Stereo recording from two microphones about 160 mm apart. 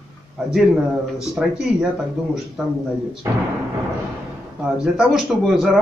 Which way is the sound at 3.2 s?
20° right (ahead or behind).